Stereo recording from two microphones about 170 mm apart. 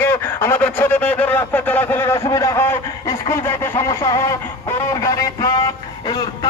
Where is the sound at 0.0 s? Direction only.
15° left (ahead or behind).